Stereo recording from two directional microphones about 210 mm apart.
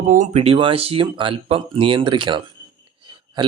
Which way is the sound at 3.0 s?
25° right (ahead or behind).